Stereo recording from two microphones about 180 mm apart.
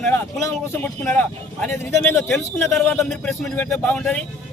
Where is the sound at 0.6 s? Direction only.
15° left (ahead or behind).